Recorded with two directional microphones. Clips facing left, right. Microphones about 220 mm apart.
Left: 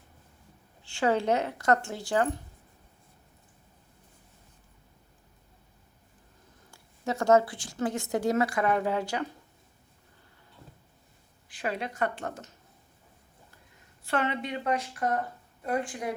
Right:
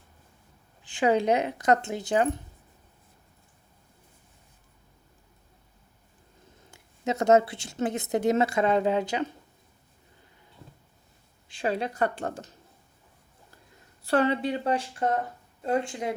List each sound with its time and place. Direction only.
0.9 s speech: 15° right (ahead or behind)
6.7 s a woman's voice: 20° right (ahead or behind)
11.4 s speech: 30° right (ahead or behind)
14.0 s a woman's voice: 35° right (ahead or behind)